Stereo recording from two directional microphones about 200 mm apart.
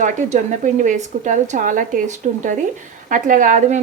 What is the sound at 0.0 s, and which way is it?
A woman's voice, 40° right (ahead or behind).